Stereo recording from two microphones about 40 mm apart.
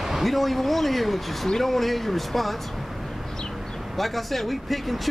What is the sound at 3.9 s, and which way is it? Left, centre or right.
Speech, centre.